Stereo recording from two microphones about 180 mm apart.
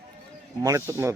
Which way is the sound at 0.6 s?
20° right (ahead or behind).